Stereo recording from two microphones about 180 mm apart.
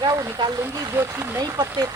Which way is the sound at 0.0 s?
20° right (ahead or behind).